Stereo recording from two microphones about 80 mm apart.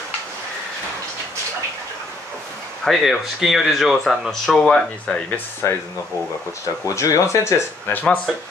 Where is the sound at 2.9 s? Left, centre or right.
Centre.